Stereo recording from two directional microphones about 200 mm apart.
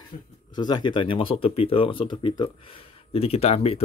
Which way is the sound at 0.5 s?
20° left (ahead or behind).